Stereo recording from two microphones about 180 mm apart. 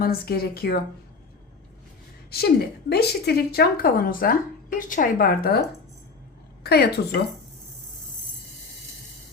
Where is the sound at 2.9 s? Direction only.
65° left (ahead or behind).